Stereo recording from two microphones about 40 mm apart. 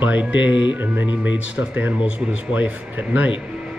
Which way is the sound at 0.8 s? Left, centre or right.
Right.